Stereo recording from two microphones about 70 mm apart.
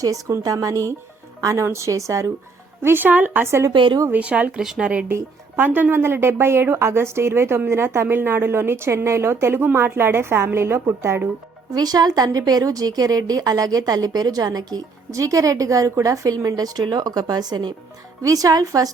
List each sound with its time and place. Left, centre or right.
0.0 s a woman's voice: right
1.6 s a woman's voice: right
2.8 s speech: right
4.6 s speech: centre
4.9 s a woman's voice: centre; by 11.2 s right
11.7 s a woman's voice: right
18.2 s a woman's voice: right